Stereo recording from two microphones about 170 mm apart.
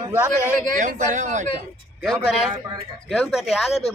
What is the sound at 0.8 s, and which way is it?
Speech, 45° right (ahead or behind).